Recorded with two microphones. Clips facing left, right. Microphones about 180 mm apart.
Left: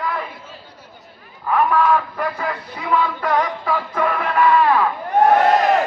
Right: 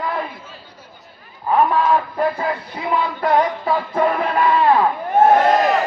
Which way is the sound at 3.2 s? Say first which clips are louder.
Right 3 dB; 30° right (ahead or behind).